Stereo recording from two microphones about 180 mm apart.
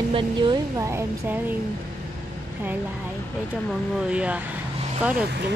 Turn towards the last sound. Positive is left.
turn(degrees=-5)  # may be behind; listen again after turning